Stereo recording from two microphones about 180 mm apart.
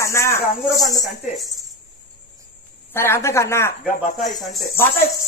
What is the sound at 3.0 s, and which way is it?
Speech, 15° left (ahead or behind).